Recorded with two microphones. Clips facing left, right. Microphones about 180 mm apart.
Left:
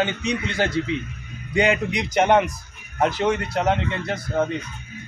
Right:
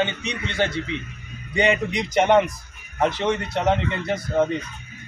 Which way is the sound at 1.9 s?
Centre (ahead or behind).